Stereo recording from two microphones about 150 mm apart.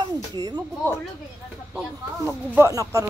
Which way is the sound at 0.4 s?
30° right (ahead or behind).